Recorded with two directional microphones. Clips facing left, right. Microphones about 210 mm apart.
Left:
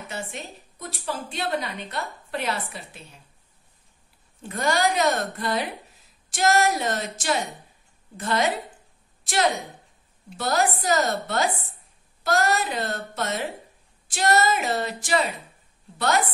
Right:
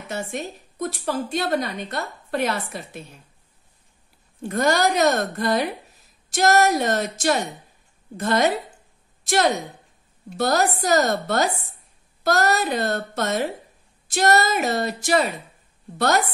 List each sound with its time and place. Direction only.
0.1 s speech: 45° right (ahead or behind)
4.4 s speech: 45° right (ahead or behind)
10.3 s speech: 40° right (ahead or behind)